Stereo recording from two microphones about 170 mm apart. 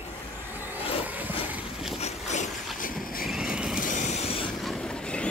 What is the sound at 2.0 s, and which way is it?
Boat, 40° left (ahead or behind).